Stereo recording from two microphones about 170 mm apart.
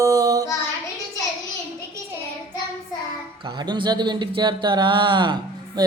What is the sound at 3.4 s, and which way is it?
Speech, 25° right (ahead or behind).